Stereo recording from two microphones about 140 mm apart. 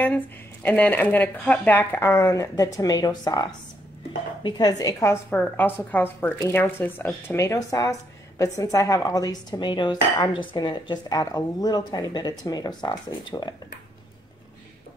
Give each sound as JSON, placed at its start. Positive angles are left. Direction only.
{"t": 0.0, "sound": "a woman's voice", "side_deg": 10}